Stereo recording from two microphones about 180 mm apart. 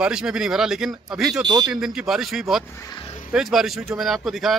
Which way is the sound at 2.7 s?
20° left (ahead or behind).